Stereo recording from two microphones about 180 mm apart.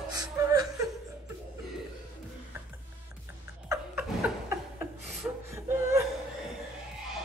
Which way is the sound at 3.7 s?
15° right (ahead or behind).